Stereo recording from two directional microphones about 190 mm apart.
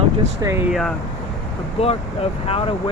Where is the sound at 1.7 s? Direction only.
30° left (ahead or behind).